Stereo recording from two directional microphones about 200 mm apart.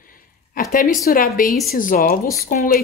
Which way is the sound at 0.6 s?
45° left (ahead or behind).